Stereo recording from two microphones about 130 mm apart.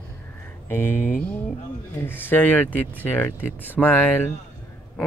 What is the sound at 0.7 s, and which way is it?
Speech, 15° left (ahead or behind).